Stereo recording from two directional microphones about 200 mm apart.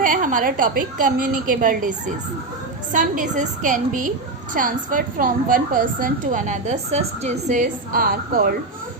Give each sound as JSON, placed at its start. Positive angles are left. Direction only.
{"t": 0.0, "sound": "a woman's voice", "side_deg": -40}